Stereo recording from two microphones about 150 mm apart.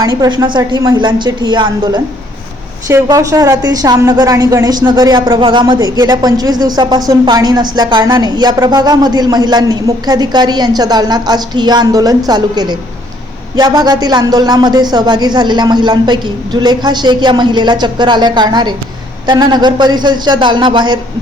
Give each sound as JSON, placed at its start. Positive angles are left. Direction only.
{"t": 0.0, "sound": "speech", "side_deg": -30}